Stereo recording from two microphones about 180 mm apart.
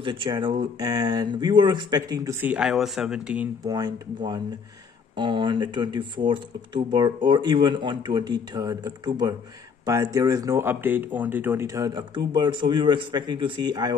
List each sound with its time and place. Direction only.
0.0 s speech: 25° right (ahead or behind)
2.4 s speech: 5° right (ahead or behind)
3.6 s speech: 20° right (ahead or behind)